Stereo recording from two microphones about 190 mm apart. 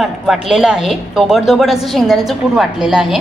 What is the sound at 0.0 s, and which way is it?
A woman's voice, centre (ahead or behind).